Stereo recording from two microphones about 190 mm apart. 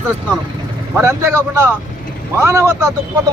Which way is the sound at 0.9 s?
15° right (ahead or behind).